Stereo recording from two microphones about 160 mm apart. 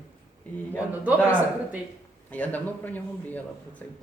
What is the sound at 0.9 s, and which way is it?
Speech, 10° right (ahead or behind).